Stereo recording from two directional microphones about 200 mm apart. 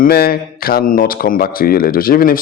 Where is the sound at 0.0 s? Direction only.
50° left (ahead or behind).